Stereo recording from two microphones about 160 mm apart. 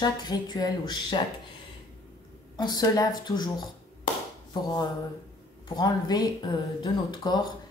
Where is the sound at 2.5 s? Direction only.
25° left (ahead or behind).